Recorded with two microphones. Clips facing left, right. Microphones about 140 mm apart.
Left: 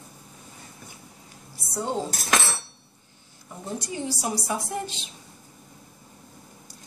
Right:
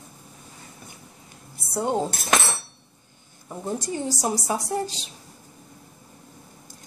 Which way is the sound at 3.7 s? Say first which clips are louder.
Right 1 dB; 40° right (ahead or behind).